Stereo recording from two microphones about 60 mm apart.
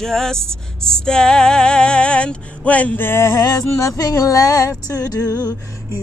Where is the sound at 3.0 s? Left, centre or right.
Left.